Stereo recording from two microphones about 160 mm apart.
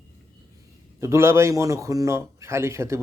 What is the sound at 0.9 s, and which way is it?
A man's voice, 15° right (ahead or behind).